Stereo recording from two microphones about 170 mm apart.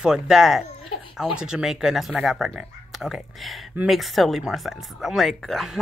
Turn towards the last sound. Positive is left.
turn(degrees=0)  # may be behind; listen again after turning